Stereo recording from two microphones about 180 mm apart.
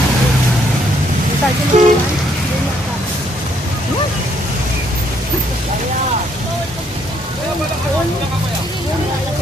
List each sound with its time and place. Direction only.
1.7 s toot: 40° right (ahead or behind)